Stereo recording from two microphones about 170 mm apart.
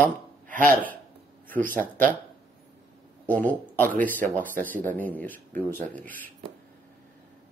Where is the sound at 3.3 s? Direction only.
10° left (ahead or behind).